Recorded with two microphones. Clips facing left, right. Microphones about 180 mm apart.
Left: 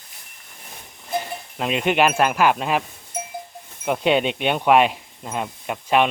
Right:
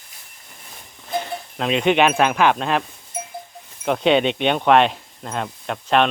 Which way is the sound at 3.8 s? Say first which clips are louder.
Right 2 dB; 5° left (ahead or behind).